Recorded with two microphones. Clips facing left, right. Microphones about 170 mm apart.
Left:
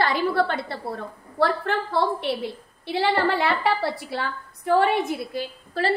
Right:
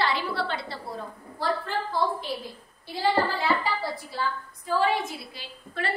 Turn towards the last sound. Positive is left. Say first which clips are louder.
# left 7 dB
turn(degrees=30)  # may be behind; listen again after turning